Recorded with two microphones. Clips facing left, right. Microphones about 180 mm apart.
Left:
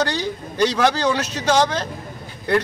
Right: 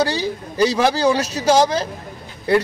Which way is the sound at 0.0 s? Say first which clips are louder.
Right 2 dB; 10° right (ahead or behind).